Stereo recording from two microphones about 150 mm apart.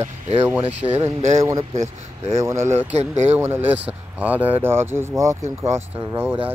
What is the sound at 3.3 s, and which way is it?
Speech, 15° right (ahead or behind).